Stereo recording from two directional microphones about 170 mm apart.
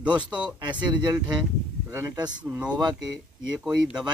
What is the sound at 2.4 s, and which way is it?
Speech, 5° right (ahead or behind).